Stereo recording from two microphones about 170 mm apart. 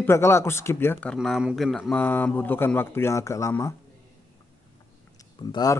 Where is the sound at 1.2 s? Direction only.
5° right (ahead or behind); by 3.8 s 20° left (ahead or behind).